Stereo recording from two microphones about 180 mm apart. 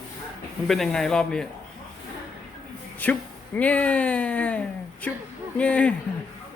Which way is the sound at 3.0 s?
10° left (ahead or behind).